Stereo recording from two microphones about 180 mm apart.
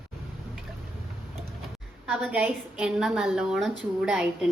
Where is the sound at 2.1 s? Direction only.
5° right (ahead or behind).